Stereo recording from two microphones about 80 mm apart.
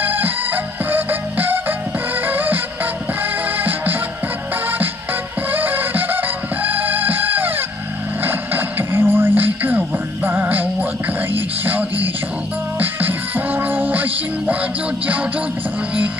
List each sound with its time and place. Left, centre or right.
0.0 s music: right
5.5 s music: right